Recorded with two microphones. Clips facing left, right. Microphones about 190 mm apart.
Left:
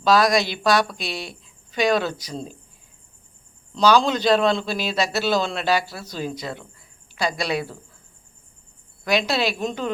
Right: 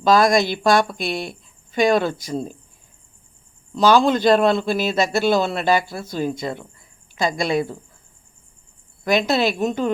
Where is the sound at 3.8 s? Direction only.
50° right (ahead or behind).